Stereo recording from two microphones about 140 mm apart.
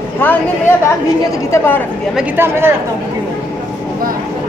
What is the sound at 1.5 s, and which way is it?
Speech, 15° left (ahead or behind).